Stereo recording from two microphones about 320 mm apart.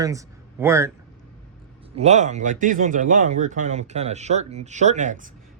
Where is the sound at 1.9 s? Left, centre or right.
Right.